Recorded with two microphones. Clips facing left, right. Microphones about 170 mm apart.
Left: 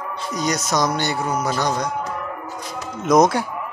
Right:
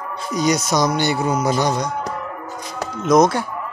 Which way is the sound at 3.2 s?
10° left (ahead or behind).